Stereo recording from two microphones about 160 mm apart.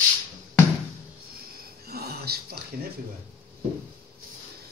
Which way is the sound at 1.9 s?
80° right.